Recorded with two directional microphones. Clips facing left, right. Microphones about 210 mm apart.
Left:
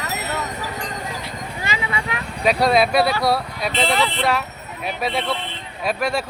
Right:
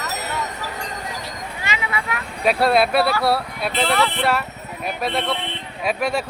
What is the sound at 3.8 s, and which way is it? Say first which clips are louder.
Speech: right 1 dB; 15° left (ahead or behind).